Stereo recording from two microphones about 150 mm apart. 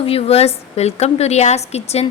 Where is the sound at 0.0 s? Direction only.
40° left (ahead or behind).